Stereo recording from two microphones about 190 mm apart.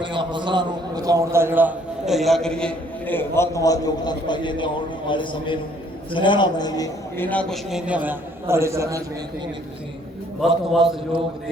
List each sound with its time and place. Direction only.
0.0 s a man's voice: 25° right (ahead or behind); by 7.3 s 20° left (ahead or behind)
7.3 s a man's voice: 5° left (ahead or behind); by 9.0 s 15° right (ahead or behind)
10.4 s a man's voice: centre (ahead or behind)